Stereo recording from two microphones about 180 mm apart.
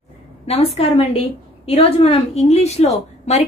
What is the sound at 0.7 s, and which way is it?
A woman's voice, 35° left (ahead or behind).